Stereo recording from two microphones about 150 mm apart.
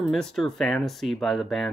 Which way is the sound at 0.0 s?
5° left (ahead or behind).